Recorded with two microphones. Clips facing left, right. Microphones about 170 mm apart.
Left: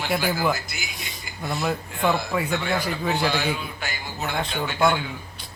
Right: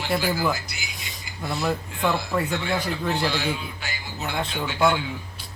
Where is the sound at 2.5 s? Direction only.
55° left (ahead or behind).